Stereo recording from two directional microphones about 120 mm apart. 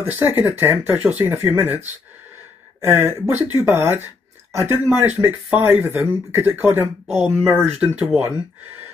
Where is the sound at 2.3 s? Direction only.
20° right (ahead or behind).